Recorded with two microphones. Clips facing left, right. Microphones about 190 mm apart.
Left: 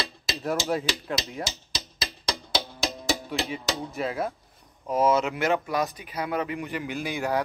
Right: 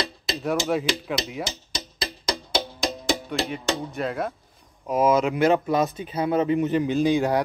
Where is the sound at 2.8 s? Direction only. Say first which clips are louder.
Right 3 dB; centre (ahead or behind).